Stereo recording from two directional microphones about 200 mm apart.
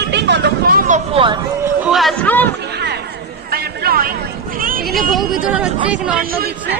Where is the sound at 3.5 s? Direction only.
50° right (ahead or behind).